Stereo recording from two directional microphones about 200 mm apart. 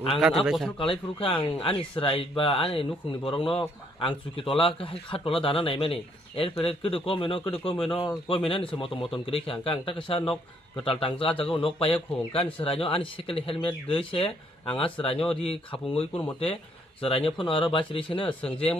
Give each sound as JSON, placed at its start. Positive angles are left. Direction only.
{"t": 0.5, "sound": "speech", "side_deg": 0}
{"t": 0.7, "sound": "speech", "side_deg": 25}